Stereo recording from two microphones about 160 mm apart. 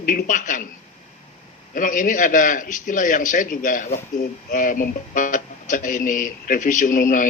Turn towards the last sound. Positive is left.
turn(degrees=55)  # may be behind; listen again after turning